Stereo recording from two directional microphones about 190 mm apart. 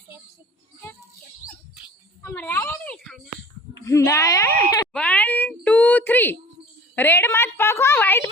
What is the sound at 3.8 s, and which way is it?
Speech, 15° left (ahead or behind).